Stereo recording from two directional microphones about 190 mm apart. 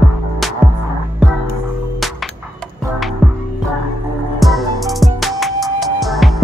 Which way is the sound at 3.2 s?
Centre (ahead or behind).